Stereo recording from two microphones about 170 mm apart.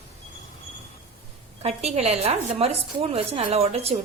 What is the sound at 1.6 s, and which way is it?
A woman's voice, 40° right (ahead or behind).